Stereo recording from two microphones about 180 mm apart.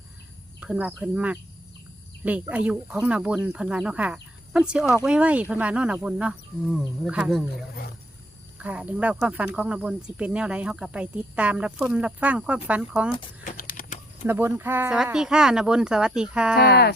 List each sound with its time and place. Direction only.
0.6 s speech: 5° right (ahead or behind)
2.5 s speech: 5° right (ahead or behind)
8.5 s speech: 5° right (ahead or behind)
13.4 s a sound: 50° left (ahead or behind)
14.3 s speech: 10° right (ahead or behind)